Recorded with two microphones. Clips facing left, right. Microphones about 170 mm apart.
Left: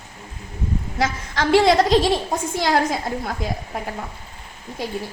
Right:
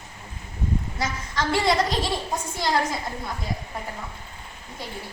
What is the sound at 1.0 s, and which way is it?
A woman's voice, 90° left.